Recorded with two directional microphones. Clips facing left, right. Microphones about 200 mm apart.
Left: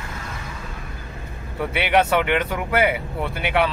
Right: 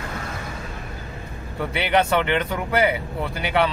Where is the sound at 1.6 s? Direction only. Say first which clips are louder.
Left 1 dB; 5° left (ahead or behind).